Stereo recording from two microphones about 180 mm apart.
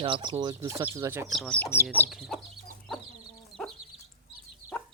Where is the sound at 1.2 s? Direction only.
Centre (ahead or behind).